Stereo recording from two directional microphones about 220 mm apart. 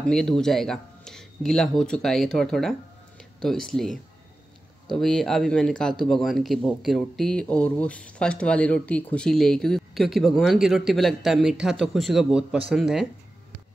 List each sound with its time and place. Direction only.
0.0 s speech: centre (ahead or behind)